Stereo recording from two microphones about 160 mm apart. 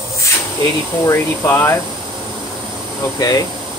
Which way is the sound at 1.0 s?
15° left (ahead or behind).